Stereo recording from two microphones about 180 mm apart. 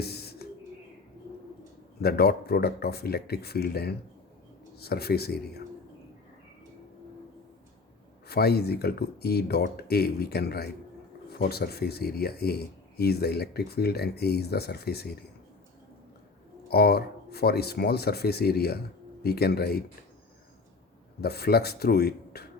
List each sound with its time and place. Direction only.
0.0 s music: 60° left (ahead or behind)
2.0 s speech: 60° left (ahead or behind)
8.3 s speech: 60° left (ahead or behind)
16.6 s speech: 60° left (ahead or behind)
21.2 s speech: 60° left (ahead or behind)